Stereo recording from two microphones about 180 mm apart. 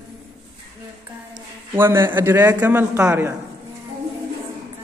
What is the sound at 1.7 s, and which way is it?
A man's voice, 15° right (ahead or behind).